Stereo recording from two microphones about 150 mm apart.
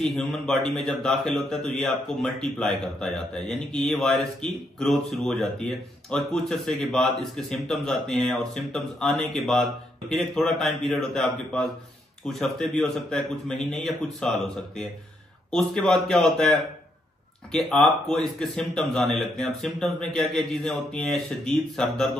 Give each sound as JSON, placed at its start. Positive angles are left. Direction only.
{"t": 0.0, "sound": "a man's voice", "side_deg": 5}